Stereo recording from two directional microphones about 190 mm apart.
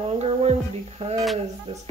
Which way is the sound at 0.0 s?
30° right (ahead or behind).